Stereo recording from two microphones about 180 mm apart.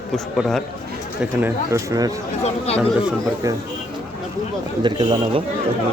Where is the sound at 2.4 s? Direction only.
35° left (ahead or behind).